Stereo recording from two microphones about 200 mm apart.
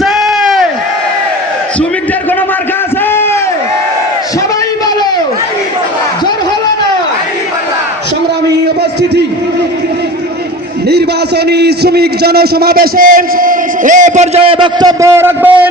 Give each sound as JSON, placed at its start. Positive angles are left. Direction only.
{"t": 0.0, "sound": "crowd", "side_deg": 0}
{"t": 11.4, "sound": "a man's voice", "side_deg": -55}